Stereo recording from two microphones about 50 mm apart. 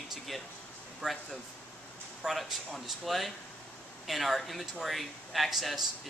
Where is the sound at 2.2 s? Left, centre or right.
Centre.